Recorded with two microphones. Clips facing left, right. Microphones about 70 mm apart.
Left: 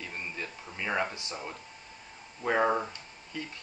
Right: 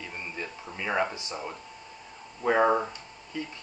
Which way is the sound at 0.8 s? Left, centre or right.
Centre.